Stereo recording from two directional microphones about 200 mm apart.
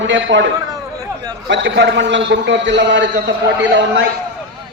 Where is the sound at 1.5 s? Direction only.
65° right (ahead or behind).